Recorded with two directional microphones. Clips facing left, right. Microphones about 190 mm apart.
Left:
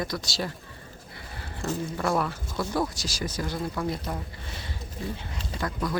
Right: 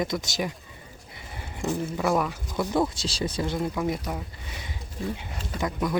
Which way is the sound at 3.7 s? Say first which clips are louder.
Right 2 dB; 10° right (ahead or behind).